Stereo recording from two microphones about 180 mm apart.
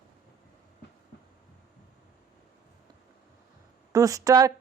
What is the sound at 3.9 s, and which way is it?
Speech, 20° right (ahead or behind).